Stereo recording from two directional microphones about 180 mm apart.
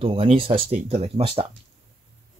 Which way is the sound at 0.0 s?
30° right (ahead or behind).